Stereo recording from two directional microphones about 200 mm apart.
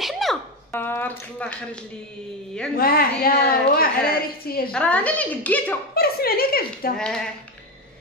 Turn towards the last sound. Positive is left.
turn(degrees=5)  # may be behind; listen again after turning